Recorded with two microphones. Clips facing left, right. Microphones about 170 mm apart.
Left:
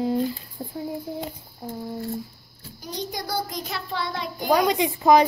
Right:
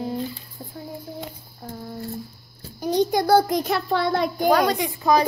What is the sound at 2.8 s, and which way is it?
A child's voice, 55° right (ahead or behind).